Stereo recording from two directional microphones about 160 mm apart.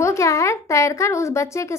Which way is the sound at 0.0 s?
20° left (ahead or behind).